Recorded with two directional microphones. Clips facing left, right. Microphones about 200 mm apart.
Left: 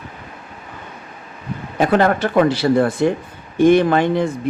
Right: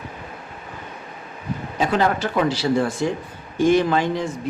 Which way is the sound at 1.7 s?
60° left (ahead or behind).